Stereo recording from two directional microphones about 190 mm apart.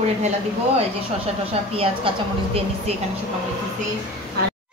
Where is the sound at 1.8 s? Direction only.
30° right (ahead or behind).